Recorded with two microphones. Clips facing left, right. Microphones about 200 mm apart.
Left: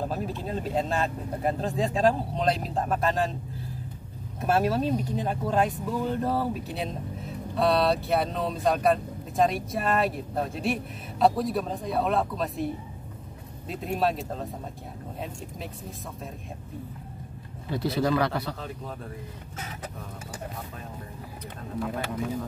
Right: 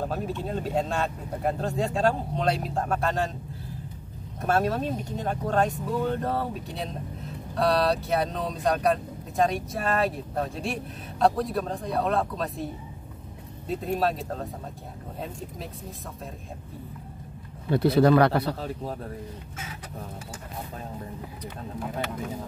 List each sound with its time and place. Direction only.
0.1 s speech: centre (ahead or behind)
4.4 s speech: 5° left (ahead or behind)
13.8 s speech: centre (ahead or behind)
17.6 s speech: 60° right (ahead or behind)